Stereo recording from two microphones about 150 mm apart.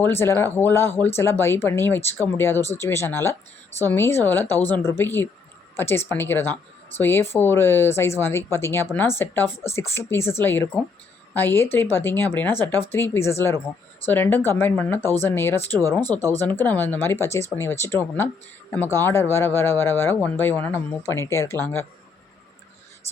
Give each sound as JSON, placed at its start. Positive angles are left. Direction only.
{"t": 0.0, "sound": "speech", "side_deg": 15}
{"t": 15.7, "sound": "speech", "side_deg": -20}
{"t": 16.5, "sound": "speech", "side_deg": 15}